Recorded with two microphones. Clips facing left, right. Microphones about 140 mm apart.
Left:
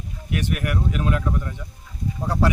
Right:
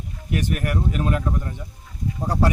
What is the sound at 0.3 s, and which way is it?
A man's voice, 45° right (ahead or behind).